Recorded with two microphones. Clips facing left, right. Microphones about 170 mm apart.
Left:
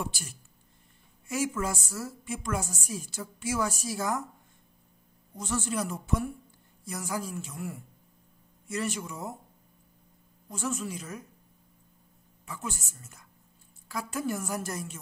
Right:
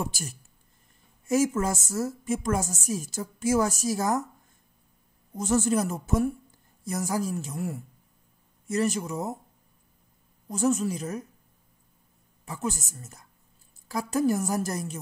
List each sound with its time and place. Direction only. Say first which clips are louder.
0.0 s a woman's voice: right 4 dB; 45° right (ahead or behind)
5.3 s a woman's voice: right 8 dB; 45° right (ahead or behind)
10.5 s a woman's voice: right 9 dB; 40° right (ahead or behind)
12.4 s a woman's voice: right 7 dB; 40° right (ahead or behind)